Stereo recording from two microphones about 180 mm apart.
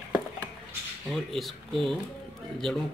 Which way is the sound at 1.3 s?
Centre (ahead or behind).